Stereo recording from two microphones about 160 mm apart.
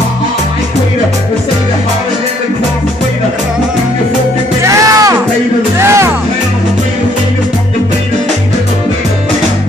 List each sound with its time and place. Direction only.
4.6 s music: 20° right (ahead or behind)